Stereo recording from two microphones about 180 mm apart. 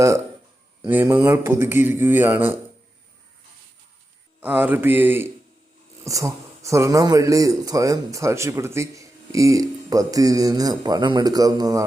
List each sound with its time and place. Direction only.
0.9 s speech: 10° right (ahead or behind)
4.4 s speech: 10° right (ahead or behind)